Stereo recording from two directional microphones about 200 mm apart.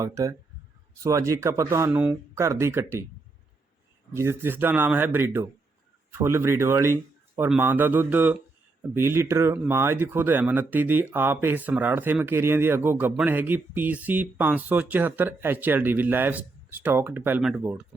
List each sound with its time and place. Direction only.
0.0 s speech: 15° right (ahead or behind)
4.1 s speech: 15° right (ahead or behind)